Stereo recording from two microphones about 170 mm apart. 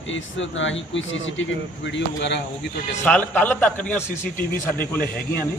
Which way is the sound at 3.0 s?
10° left (ahead or behind).